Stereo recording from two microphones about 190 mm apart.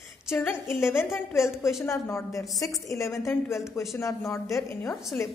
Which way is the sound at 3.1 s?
Centre (ahead or behind).